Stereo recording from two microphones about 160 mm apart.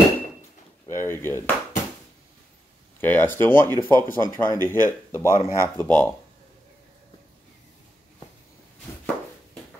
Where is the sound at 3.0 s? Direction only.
10° left (ahead or behind).